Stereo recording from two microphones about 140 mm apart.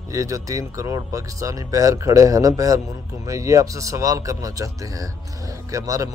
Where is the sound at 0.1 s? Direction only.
20° right (ahead or behind).